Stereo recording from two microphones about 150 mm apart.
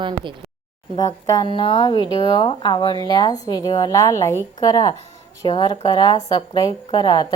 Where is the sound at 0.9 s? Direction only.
25° left (ahead or behind).